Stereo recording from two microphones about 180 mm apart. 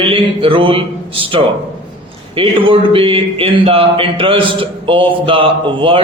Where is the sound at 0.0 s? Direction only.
30° right (ahead or behind).